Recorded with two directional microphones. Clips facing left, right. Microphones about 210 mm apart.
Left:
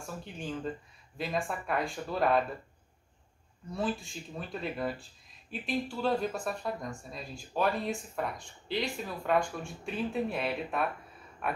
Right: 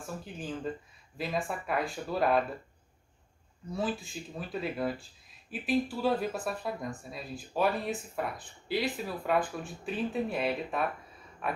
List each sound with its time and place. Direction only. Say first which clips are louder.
0.0 s speech: right 1 dB; centre (ahead or behind)
3.7 s speech: even; centre (ahead or behind)